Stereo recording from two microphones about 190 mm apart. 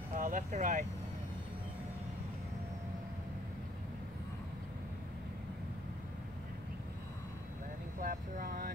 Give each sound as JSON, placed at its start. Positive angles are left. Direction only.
{"t": 0.1, "sound": "speech", "side_deg": -45}
{"t": 8.0, "sound": "speech", "side_deg": -45}